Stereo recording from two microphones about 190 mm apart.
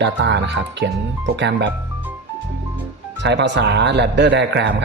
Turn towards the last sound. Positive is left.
turn(degrees=-70)  # may be behind; listen again after turning